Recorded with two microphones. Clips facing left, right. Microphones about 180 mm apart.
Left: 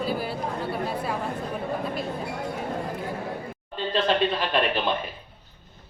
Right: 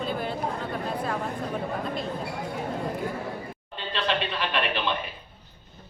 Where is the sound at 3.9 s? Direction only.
45° left (ahead or behind).